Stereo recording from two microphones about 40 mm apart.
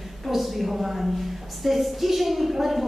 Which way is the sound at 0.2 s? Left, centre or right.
Centre.